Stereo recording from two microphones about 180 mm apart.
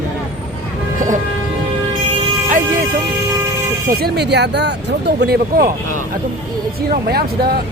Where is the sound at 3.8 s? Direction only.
55° right (ahead or behind).